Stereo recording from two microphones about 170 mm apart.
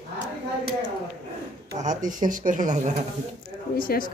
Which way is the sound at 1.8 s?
50° right (ahead or behind).